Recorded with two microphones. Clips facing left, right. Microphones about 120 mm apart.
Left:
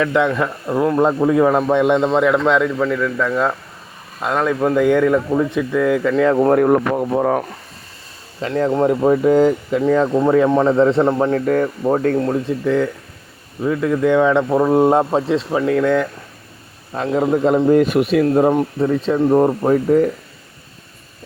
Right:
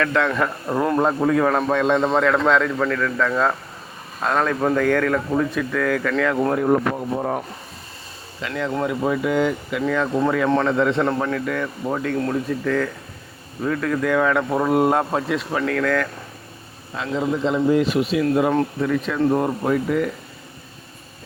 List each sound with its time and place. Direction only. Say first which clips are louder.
0.0 s a man's voice: left 3 dB; 15° left (ahead or behind); by 1.0 s centre (ahead or behind)
1.0 s a man's voice: left 6 dB; 20° left (ahead or behind)
6.5 s speech: left 5 dB; 60° left (ahead or behind); by 7.4 s 85° left
8.4 s speech: left 7 dB; 35° left (ahead or behind)
11.0 s a man's voice: left 5 dB; 20° left (ahead or behind)
11.3 s speech: left 7 dB; 40° left (ahead or behind)
12.2 s speech: left 4 dB; 20° left (ahead or behind)
16.9 s a man's voice: left 6 dB; 40° left (ahead or behind)
18.8 s speech: left 4 dB; 30° left (ahead or behind)